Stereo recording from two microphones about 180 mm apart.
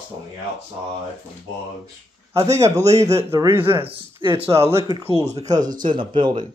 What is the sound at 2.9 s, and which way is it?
Speech, 35° right (ahead or behind).